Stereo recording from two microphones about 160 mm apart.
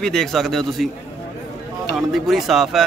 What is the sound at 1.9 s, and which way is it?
Speech, centre (ahead or behind).